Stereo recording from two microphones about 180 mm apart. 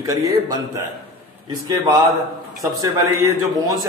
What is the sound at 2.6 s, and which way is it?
A man's voice, 20° right (ahead or behind).